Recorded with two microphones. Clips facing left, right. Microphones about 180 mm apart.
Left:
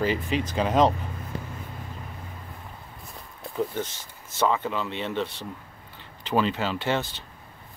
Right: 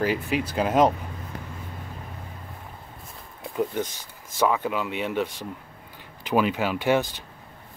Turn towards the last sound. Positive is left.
turn(degrees=-10)  # may be behind; listen again after turning